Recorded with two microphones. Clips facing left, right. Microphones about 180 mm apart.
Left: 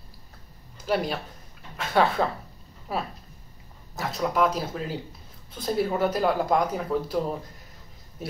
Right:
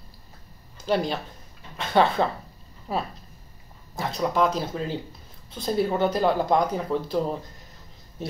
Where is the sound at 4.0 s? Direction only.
5° left (ahead or behind).